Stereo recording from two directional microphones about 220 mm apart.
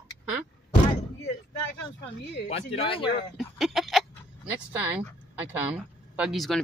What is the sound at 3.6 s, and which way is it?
Speech, centre (ahead or behind).